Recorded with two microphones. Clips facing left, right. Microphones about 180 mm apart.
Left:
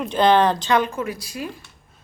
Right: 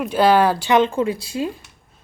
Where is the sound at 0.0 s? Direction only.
5° right (ahead or behind).